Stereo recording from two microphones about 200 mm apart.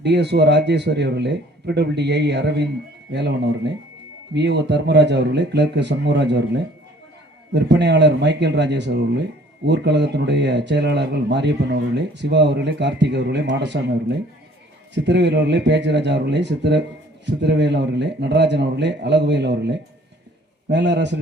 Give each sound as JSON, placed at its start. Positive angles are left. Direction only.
{"t": 0.0, "sound": "speech", "side_deg": -55}